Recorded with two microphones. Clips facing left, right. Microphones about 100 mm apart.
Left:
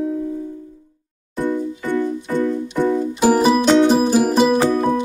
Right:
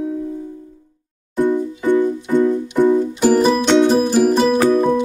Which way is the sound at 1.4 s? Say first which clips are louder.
Right 4 dB; 15° right (ahead or behind).